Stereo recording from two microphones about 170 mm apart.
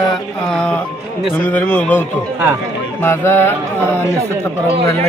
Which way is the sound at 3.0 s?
15° left (ahead or behind).